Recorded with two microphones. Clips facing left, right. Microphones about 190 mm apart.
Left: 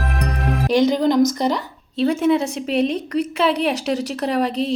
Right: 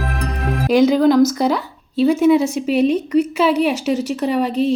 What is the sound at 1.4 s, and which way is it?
A woman's voice, 5° right (ahead or behind).